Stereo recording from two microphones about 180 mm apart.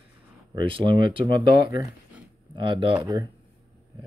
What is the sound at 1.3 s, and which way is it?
Speech, 55° left (ahead or behind).